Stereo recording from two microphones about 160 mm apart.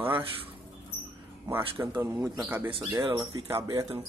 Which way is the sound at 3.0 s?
30° right (ahead or behind).